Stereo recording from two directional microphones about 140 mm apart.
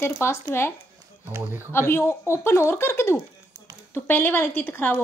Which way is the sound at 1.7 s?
15° left (ahead or behind).